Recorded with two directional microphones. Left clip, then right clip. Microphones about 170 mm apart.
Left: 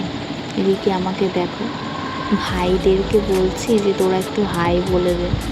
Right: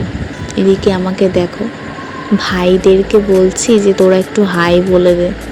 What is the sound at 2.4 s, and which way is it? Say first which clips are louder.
Speech: right 9 dB; 40° right (ahead or behind).